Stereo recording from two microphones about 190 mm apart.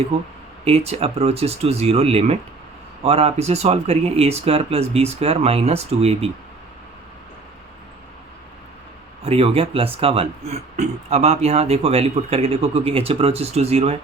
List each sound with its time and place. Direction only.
0.6 s speech: 30° right (ahead or behind)
9.2 s speech: 30° right (ahead or behind)